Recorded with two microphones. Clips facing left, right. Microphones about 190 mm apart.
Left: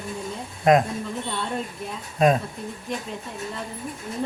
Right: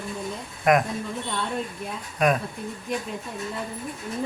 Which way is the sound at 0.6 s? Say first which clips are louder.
Left 3 dB; 25° left (ahead or behind).